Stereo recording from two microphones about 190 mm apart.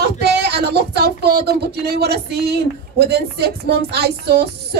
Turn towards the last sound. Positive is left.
turn(degrees=-60)  # may be behind; listen again after turning